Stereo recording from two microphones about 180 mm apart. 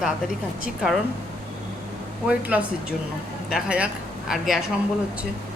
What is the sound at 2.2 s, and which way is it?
A woman's voice, 10° right (ahead or behind).